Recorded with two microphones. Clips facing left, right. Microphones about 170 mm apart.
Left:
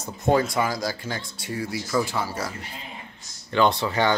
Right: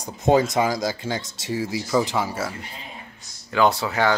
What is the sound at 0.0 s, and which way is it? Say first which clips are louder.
Speech: right 3 dB; 15° right (ahead or behind).